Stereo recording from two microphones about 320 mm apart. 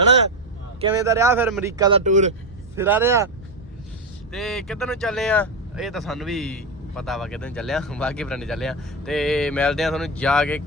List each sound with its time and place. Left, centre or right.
0.8 s speech: centre
1.8 s speech: centre
2.7 s speech: centre
4.3 s speech: centre